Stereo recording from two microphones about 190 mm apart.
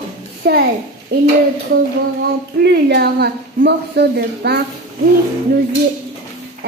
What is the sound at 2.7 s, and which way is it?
Speech, 60° right (ahead or behind).